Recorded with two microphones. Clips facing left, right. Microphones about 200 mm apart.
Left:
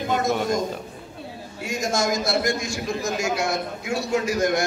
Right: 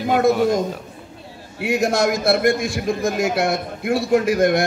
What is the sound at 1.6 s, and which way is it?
A man's voice, 60° right (ahead or behind).